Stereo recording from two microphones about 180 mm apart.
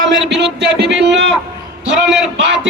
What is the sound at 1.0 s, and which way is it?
Speech, 75° right (ahead or behind).